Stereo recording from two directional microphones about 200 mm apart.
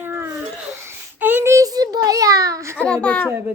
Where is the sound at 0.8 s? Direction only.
10° right (ahead or behind).